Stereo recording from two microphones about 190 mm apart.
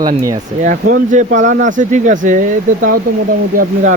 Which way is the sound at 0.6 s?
45° right (ahead or behind).